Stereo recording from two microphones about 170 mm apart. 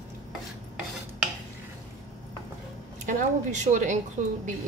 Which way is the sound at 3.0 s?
45° right (ahead or behind).